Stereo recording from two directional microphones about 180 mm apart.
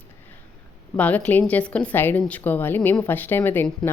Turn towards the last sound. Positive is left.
turn(degrees=10)  # may be behind; listen again after turning